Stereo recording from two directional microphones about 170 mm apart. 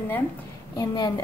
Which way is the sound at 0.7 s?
25° left (ahead or behind).